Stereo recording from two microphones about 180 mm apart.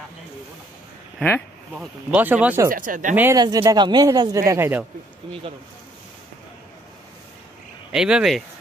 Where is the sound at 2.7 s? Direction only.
50° right (ahead or behind).